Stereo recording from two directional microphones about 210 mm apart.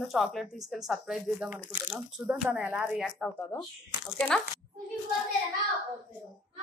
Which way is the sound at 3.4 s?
10° left (ahead or behind).